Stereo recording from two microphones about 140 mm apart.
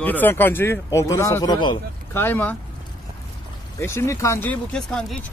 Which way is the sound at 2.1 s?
15° left (ahead or behind).